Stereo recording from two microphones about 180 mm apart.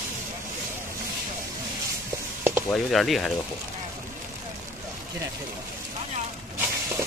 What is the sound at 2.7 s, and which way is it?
Speech, centre (ahead or behind).